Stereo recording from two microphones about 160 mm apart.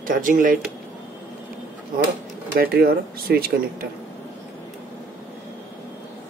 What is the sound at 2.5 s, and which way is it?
Speech, 75° right (ahead or behind).